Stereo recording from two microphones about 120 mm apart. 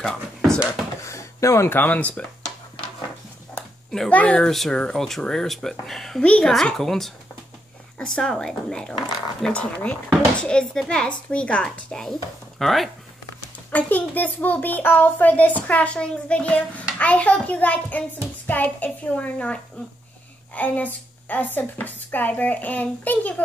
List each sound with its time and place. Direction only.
0.0 s speech: 5° left (ahead or behind)
1.0 s speech: 25° left (ahead or behind)
3.6 s a sound: 20° left (ahead or behind)
3.9 s a child's voice: 10° left (ahead or behind)
13.7 s a child's voice: 15° left (ahead or behind)